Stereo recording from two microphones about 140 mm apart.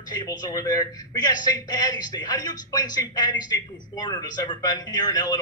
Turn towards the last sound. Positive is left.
turn(degrees=30)  # may be behind; listen again after turning